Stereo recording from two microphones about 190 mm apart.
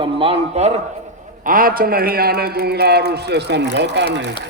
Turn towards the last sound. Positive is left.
turn(degrees=-65)  # may be behind; listen again after turning